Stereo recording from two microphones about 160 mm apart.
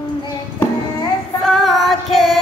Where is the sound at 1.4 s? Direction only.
Centre (ahead or behind).